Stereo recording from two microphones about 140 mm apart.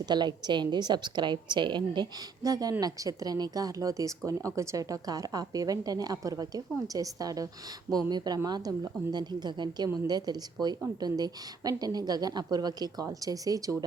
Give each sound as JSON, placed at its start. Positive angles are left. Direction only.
{"t": 0.0, "sound": "a woman's voice", "side_deg": -30}